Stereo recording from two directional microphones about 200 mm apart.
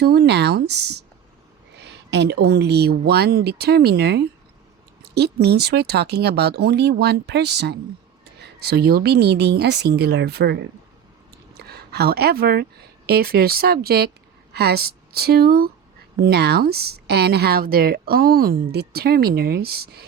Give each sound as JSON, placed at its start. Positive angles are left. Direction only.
{"t": 0.0, "sound": "a woman's voice", "side_deg": -55}